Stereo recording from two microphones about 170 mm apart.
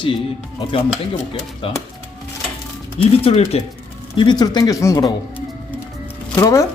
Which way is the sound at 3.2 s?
35° left (ahead or behind).